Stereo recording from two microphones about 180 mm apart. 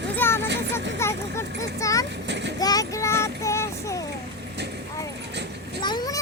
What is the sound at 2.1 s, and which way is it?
Speech, 75° right (ahead or behind).